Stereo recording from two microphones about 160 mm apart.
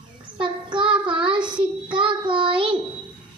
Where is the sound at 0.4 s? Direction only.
30° right (ahead or behind).